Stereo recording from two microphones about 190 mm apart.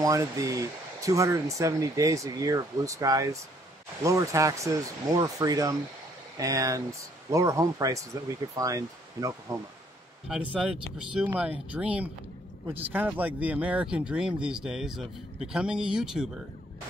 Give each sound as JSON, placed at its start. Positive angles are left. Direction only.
{"t": 0.0, "sound": "speech", "side_deg": -15}
{"t": 10.5, "sound": "speech", "side_deg": -5}